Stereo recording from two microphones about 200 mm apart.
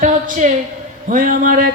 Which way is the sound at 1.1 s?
40° right (ahead or behind).